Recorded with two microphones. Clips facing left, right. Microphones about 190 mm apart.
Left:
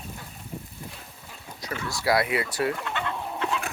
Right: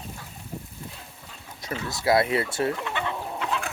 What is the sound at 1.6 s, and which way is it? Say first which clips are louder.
Speech: right 1 dB; 25° right (ahead or behind).